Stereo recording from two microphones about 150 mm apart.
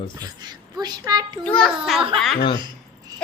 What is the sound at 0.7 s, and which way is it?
Speech, 25° right (ahead or behind).